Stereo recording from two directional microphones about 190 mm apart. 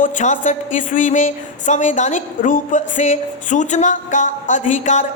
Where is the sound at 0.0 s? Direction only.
40° left (ahead or behind).